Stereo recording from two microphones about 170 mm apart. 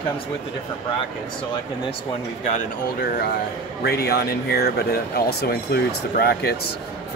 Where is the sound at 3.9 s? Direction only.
65° left (ahead or behind).